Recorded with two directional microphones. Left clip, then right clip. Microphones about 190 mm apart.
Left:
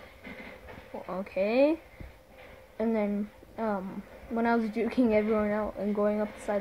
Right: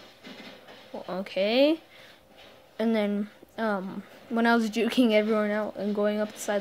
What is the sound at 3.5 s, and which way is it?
Speech, 35° right (ahead or behind).